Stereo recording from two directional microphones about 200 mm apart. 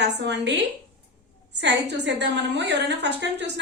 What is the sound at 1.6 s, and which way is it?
A woman's voice, 60° right (ahead or behind).